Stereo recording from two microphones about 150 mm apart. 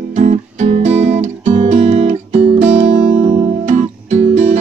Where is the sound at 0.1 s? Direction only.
50° right (ahead or behind).